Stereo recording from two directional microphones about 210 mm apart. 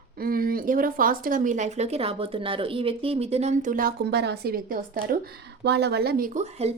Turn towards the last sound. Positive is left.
turn(degrees=-30)  # may be behind; listen again after turning